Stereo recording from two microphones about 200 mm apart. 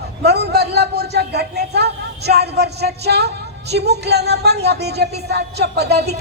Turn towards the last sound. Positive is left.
turn(degrees=-55)  # may be behind; listen again after turning